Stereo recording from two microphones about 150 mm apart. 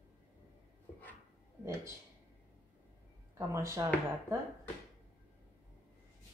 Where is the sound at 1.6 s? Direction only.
20° right (ahead or behind).